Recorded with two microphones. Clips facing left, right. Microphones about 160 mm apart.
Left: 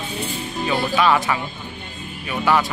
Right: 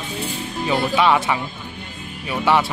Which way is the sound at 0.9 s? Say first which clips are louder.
Even; 20° right (ahead or behind).